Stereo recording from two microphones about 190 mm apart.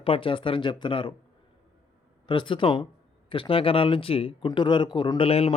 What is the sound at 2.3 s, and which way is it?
Speech, 25° left (ahead or behind).